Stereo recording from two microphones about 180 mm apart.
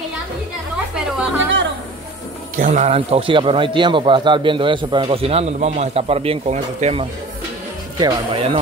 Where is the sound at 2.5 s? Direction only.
45° right (ahead or behind).